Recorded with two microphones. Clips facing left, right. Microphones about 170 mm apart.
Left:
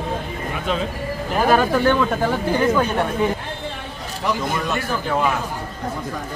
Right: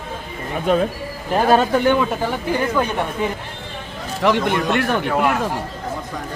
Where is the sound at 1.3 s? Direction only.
25° right (ahead or behind).